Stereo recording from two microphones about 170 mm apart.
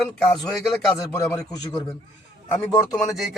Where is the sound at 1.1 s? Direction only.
20° left (ahead or behind).